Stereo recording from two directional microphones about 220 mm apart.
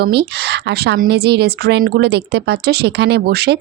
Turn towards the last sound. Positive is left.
turn(degrees=-50)  # may be behind; listen again after turning